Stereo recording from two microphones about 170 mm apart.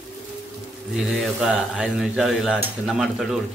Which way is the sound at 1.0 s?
Centre (ahead or behind).